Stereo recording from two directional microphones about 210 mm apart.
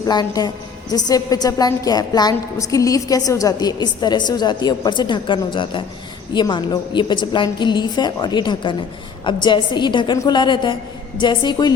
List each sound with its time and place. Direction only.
0.1 s a woman's voice: 20° left (ahead or behind)